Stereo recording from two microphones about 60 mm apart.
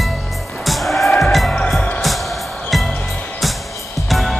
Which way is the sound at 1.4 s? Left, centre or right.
Centre.